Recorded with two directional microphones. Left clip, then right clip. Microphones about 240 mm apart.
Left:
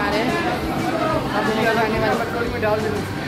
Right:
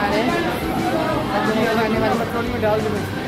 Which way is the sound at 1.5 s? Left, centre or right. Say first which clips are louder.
Left 1 dB; centre.